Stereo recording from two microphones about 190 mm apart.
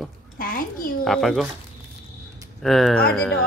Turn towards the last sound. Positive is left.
turn(degrees=5)  # may be behind; listen again after turning